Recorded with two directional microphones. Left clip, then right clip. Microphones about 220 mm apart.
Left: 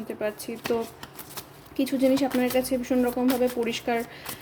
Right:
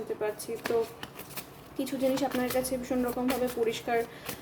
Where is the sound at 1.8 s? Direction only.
25° left (ahead or behind).